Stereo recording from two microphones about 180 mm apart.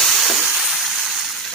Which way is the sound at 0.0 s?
Centre (ahead or behind).